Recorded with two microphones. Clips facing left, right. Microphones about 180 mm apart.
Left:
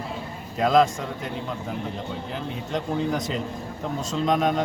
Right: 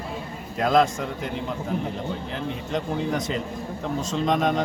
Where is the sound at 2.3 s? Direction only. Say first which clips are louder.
Even; centre (ahead or behind).